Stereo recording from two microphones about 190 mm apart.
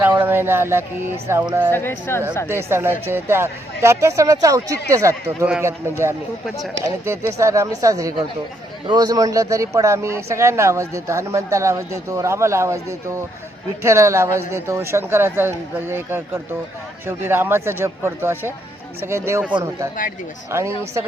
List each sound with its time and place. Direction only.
0.0 s speech: 10° right (ahead or behind)
1.7 s a woman's voice: 10° left (ahead or behind)
2.5 s speech: 15° right (ahead or behind)